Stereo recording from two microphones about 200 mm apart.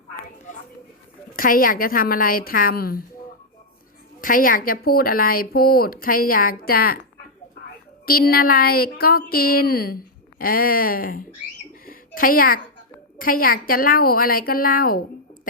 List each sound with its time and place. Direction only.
1.4 s speech: 45° left (ahead or behind)
4.2 s speech: 45° left (ahead or behind)
8.0 s speech: 50° left (ahead or behind)
11.7 s a sound: 45° left (ahead or behind)
13.1 s speech: 45° left (ahead or behind)